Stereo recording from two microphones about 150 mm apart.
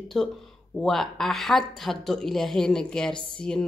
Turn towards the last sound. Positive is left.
turn(degrees=5)  # may be behind; listen again after turning